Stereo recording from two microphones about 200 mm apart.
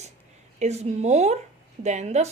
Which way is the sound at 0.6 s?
35° right (ahead or behind).